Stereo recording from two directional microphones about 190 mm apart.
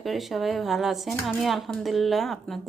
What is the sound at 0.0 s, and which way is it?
Speech, centre (ahead or behind).